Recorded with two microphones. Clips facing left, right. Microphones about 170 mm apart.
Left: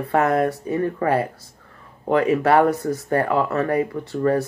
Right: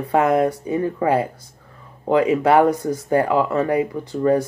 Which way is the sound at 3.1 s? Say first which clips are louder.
Right 3 dB; 20° right (ahead or behind).